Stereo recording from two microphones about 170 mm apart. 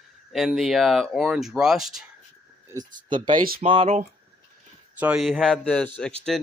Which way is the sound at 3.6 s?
35° right (ahead or behind).